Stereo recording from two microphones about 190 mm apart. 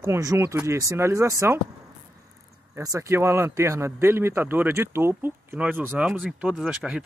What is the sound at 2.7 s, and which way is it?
Speech, 15° right (ahead or behind).